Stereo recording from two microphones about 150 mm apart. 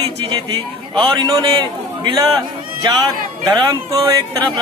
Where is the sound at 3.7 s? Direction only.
25° right (ahead or behind).